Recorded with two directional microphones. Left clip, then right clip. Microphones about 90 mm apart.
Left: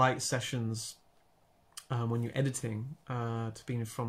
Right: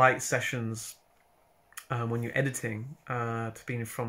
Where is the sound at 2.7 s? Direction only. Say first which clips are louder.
Right 5 dB; 20° left (ahead or behind).